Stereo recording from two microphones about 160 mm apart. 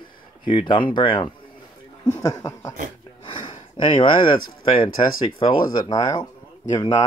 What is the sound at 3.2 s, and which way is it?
Speech, 30° left (ahead or behind).